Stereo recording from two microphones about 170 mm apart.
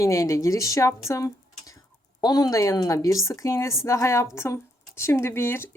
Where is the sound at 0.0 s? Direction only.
20° left (ahead or behind).